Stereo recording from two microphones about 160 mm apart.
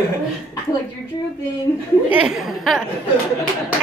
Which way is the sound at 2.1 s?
5° right (ahead or behind).